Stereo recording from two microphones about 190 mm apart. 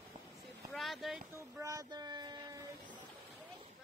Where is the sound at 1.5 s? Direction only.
15° right (ahead or behind).